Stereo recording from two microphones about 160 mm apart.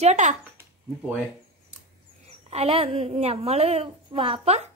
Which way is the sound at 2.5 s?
40° right (ahead or behind).